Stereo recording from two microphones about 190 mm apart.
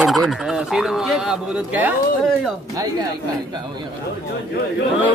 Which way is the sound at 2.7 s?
20° right (ahead or behind).